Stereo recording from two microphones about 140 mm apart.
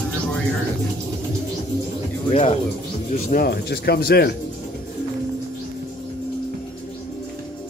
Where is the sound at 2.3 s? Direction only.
55° left (ahead or behind).